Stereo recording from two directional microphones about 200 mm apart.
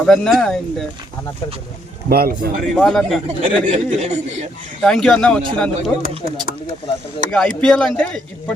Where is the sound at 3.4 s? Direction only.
35° right (ahead or behind).